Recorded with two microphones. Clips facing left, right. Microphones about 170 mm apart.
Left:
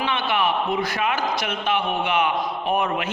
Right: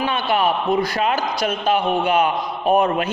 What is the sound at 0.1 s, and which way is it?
A man's voice, 40° right (ahead or behind).